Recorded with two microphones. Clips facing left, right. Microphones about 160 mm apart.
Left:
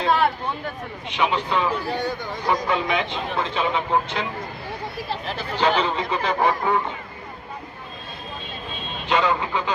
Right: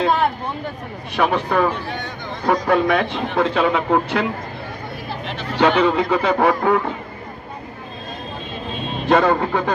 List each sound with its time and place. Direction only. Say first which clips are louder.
1.1 s a man's voice: right 4 dB; 60° right (ahead or behind)
5.6 s a man's voice: right 6 dB; 60° right (ahead or behind)
9.1 s a man's voice: right 6 dB; 55° right (ahead or behind)